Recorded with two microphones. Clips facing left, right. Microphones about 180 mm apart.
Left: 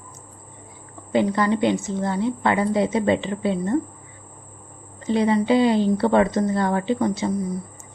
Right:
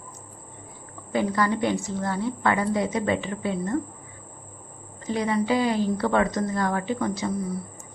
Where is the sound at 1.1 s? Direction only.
25° left (ahead or behind).